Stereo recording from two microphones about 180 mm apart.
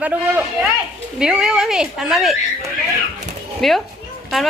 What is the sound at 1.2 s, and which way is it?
Speech, 5° right (ahead or behind).